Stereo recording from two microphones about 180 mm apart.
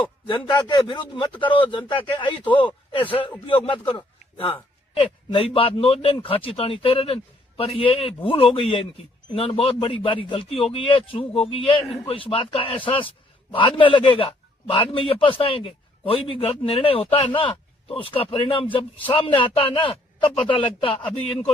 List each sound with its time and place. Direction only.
0.0 s a man's voice: 25° left (ahead or behind)